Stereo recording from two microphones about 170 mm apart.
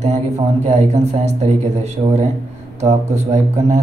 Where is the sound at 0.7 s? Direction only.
40° right (ahead or behind).